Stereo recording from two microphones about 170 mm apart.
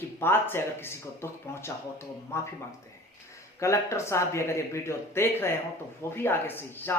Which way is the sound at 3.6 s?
15° left (ahead or behind).